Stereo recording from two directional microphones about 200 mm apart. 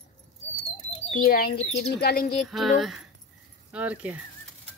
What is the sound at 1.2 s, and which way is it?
Speech, 50° left (ahead or behind).